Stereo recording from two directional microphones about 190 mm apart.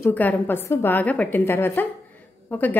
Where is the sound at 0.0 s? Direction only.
10° left (ahead or behind).